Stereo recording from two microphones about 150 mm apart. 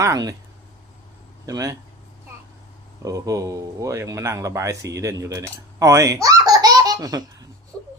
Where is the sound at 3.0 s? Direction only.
20° right (ahead or behind).